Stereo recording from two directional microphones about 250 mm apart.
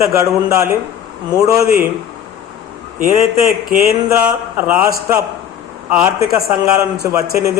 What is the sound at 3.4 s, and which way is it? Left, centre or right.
Speech, right.